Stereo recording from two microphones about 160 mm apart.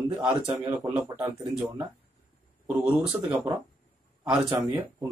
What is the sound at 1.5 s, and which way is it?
Speech, 5° right (ahead or behind).